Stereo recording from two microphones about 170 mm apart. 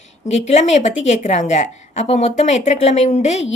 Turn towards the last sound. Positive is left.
turn(degrees=40)  # may be behind; listen again after turning